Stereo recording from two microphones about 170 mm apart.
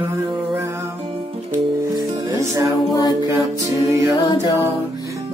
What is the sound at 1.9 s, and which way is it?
Music, 20° right (ahead or behind).